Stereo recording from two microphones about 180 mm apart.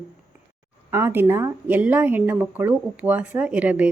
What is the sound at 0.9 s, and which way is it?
A woman's voice, 15° right (ahead or behind).